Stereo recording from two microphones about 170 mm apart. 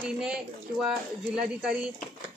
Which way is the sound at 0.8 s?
5° right (ahead or behind).